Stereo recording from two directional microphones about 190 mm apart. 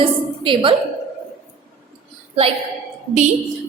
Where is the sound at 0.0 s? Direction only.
25° right (ahead or behind).